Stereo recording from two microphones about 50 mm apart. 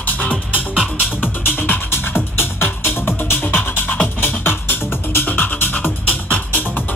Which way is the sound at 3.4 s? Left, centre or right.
Left.